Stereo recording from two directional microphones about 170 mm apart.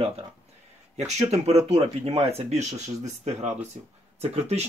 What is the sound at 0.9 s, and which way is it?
Speech, 40° right (ahead or behind).